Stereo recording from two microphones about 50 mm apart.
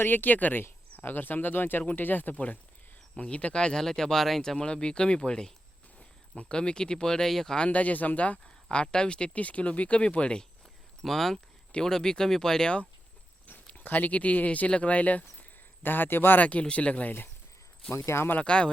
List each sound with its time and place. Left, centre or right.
0.0 s speech: left; by 4.5 s centre
4.5 s speech: centre
7.6 s speech: left
11.0 s speech: centre
13.7 s speech: left
16.4 s speech: left
17.9 s speech: left
18.3 s speech: left